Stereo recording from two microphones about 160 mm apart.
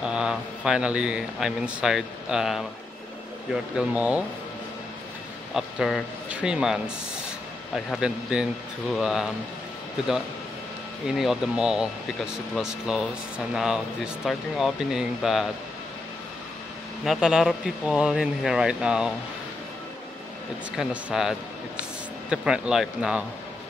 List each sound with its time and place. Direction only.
0.0 s speech: 5° right (ahead or behind)
3.7 s speech: 10° right (ahead or behind)
5.5 s a man's voice: centre (ahead or behind)
11.1 s speech: 5° right (ahead or behind)
17.0 s speech: 5° right (ahead or behind)
20.7 s speech: 5° right (ahead or behind)